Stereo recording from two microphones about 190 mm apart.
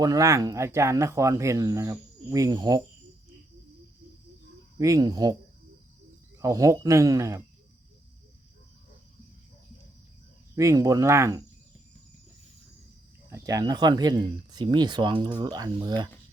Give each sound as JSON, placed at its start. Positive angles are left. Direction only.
{"t": 0.0, "sound": "speech", "side_deg": -15}
{"t": 4.8, "sound": "speech", "side_deg": -20}
{"t": 6.4, "sound": "speech", "side_deg": -15}
{"t": 10.5, "sound": "speech", "side_deg": -15}
{"t": 13.3, "sound": "speech", "side_deg": -20}